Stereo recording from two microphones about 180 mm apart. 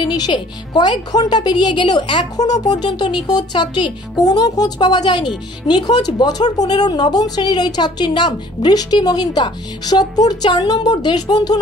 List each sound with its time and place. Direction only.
0.0 s speech: 25° left (ahead or behind)